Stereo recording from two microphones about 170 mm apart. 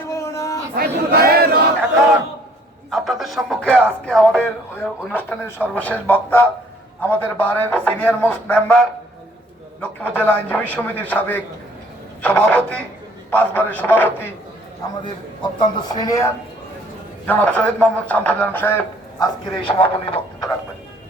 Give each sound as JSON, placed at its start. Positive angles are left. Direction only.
{"t": 0.1, "sound": "a sound", "side_deg": 15}
{"t": 0.8, "sound": "a sound", "side_deg": -65}
{"t": 2.9, "sound": "speech", "side_deg": 0}
{"t": 14.8, "sound": "speech", "side_deg": 20}
{"t": 17.2, "sound": "speech", "side_deg": 5}
{"t": 19.6, "sound": "a man's voice", "side_deg": 30}